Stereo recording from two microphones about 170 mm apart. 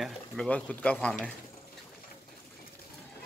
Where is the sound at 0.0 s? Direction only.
5° left (ahead or behind).